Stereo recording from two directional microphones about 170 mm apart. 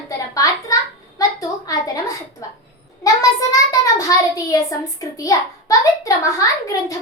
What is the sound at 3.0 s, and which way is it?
A child's voice, 20° left (ahead or behind).